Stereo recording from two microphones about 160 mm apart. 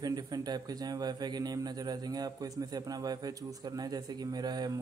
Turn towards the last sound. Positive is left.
turn(degrees=-25)  # may be behind; listen again after turning